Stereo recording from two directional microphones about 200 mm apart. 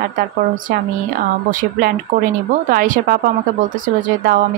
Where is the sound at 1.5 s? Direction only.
45° right (ahead or behind).